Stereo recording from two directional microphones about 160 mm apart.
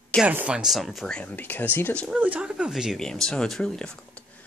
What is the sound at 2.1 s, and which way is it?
Speech, 5° right (ahead or behind).